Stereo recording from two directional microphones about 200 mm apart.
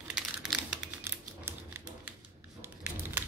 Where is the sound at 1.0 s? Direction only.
10° right (ahead or behind).